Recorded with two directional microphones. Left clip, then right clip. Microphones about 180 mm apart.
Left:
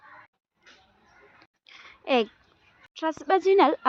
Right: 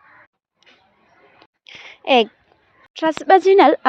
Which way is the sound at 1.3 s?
20° right (ahead or behind).